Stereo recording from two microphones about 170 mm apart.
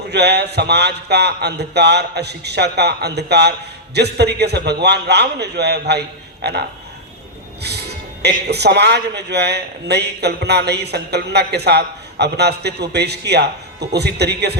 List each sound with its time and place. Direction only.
0.1 s a man's voice: 75° right (ahead or behind)
8.2 s a man's voice: 75° right (ahead or behind)